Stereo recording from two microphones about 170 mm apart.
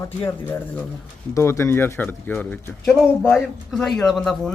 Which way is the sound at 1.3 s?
15° left (ahead or behind).